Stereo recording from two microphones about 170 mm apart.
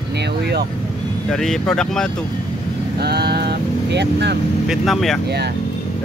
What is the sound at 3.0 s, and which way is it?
Vehicle, 70° right (ahead or behind).